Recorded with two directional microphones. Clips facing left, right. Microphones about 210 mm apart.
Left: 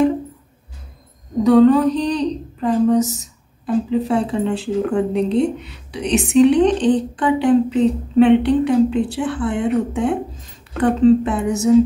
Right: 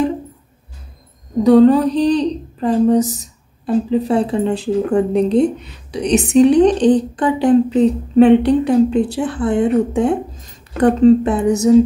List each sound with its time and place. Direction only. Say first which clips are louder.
1.4 s a woman's voice: right 2 dB; 35° right (ahead or behind)